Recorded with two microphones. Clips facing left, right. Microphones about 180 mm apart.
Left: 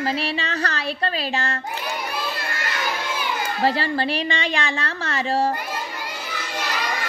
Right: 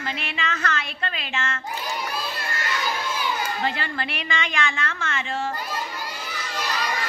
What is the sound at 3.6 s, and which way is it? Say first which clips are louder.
A woman's voice: left 6 dB; 35° left (ahead or behind).